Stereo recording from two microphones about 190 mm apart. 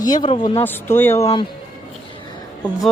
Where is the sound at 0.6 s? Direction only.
10° left (ahead or behind).